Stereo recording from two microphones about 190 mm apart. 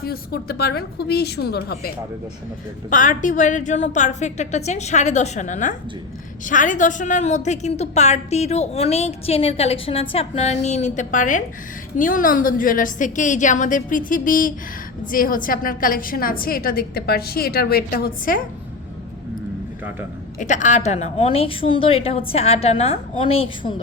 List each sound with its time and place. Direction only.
0.0 s a woman's voice: 55° left (ahead or behind)
2.9 s a woman's voice: 45° left (ahead or behind)
20.4 s a woman's voice: 40° left (ahead or behind)